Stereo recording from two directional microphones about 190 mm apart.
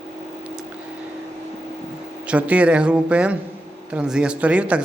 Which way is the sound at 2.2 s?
5° right (ahead or behind).